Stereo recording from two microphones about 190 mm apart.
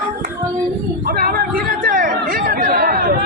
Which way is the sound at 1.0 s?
50° right (ahead or behind).